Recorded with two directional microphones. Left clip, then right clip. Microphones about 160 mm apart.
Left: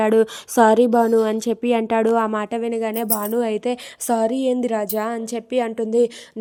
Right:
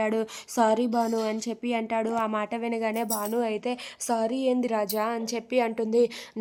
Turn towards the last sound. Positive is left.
turn(degrees=20)  # may be behind; listen again after turning